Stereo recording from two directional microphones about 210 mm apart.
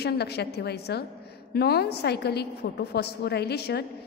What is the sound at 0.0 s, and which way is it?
A woman's voice, 50° left (ahead or behind).